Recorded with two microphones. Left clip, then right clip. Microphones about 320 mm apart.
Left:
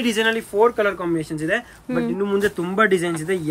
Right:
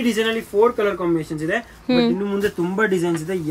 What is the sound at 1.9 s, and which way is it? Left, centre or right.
Speech, centre.